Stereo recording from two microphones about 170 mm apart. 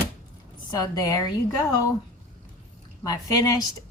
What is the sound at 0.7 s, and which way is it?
Speech, 20° left (ahead or behind).